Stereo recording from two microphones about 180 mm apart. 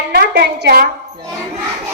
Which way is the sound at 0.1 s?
65° right (ahead or behind).